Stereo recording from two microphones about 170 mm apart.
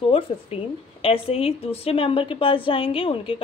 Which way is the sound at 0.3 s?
30° left (ahead or behind).